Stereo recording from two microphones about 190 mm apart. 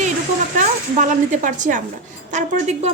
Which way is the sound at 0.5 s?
45° right (ahead or behind).